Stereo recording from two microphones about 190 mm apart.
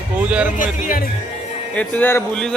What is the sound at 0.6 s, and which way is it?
Speech, 45° left (ahead or behind).